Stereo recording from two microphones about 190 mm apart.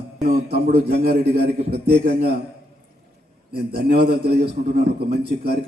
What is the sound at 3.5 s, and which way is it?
A man's voice, 55° right (ahead or behind).